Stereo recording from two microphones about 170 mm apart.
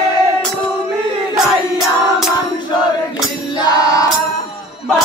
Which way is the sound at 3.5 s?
20° left (ahead or behind).